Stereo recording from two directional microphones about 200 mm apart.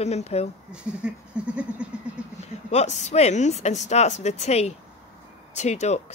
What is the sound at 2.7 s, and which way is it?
Speech, 35° left (ahead or behind).